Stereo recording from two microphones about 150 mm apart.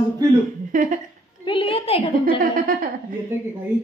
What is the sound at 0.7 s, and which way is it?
Speech, 55° right (ahead or behind).